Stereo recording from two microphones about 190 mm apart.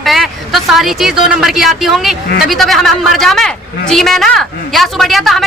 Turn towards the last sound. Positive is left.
turn(degrees=0)  # may be behind; listen again after turning